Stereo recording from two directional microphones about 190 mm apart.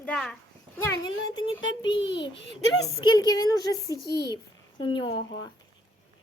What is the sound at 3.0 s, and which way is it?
Speech, 20° left (ahead or behind).